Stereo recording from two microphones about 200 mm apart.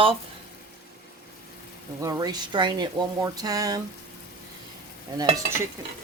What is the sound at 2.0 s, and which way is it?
Speech, 20° right (ahead or behind).